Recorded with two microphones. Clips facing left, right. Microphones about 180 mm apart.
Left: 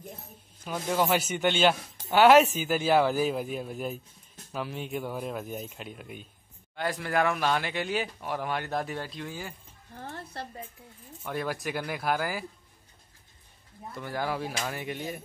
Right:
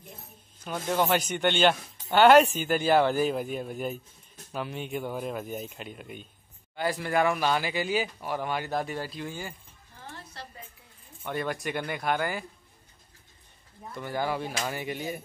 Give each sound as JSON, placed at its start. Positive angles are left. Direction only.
{"t": 0.7, "sound": "speech", "side_deg": 5}
{"t": 9.9, "sound": "dishes", "side_deg": 55}
{"t": 11.2, "sound": "speech", "side_deg": 5}
{"t": 13.9, "sound": "speech", "side_deg": 0}